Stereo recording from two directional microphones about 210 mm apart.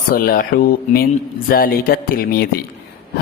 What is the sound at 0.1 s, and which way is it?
Speech, 45° left (ahead or behind).